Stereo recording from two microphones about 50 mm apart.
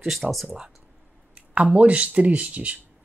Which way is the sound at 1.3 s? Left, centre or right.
Right.